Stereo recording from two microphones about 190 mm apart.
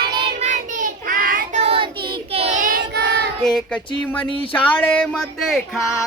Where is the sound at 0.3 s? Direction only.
40° right (ahead or behind).